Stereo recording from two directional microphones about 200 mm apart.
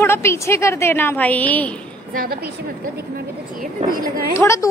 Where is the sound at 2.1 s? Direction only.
50° right (ahead or behind).